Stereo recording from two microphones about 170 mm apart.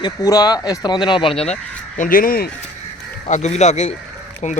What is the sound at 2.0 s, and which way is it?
Speech, 55° left (ahead or behind).